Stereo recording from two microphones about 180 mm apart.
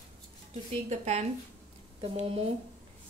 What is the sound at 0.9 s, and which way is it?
Speech, 35° right (ahead or behind).